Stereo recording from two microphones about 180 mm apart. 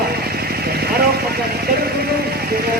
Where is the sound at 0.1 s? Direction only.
60° right (ahead or behind).